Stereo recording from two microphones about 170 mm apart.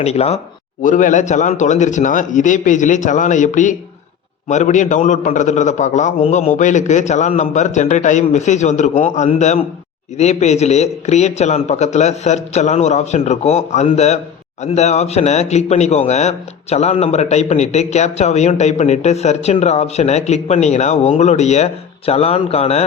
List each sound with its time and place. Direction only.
0.0 s speech: 40° left (ahead or behind)
0.8 s a man's voice: 50° left (ahead or behind)